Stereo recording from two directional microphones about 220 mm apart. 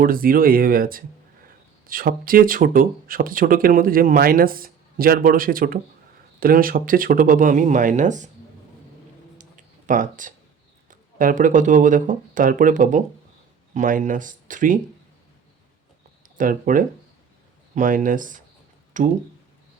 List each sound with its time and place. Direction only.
0.0 s speech: 40° right (ahead or behind)
9.4 s a sound: 35° right (ahead or behind)
11.2 s speech: 35° right (ahead or behind)
16.4 s speech: 35° right (ahead or behind)